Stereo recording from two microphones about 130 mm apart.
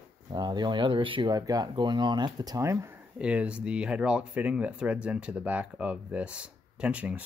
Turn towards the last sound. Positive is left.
turn(degrees=-10)  # may be behind; listen again after turning